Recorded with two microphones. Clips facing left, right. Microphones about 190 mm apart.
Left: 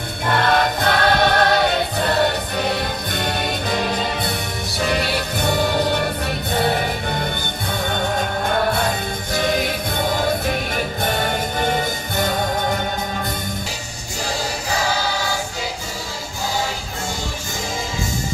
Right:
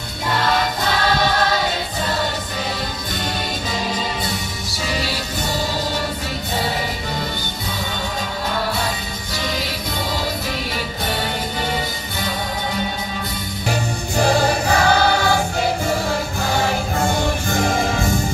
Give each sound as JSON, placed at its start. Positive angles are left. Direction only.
{"t": 0.3, "sound": "choir", "side_deg": 55}
{"t": 3.7, "sound": "music", "side_deg": 60}
{"t": 8.5, "sound": "music", "side_deg": 55}
{"t": 11.6, "sound": "music", "side_deg": 50}
{"t": 13.7, "sound": "music", "side_deg": -60}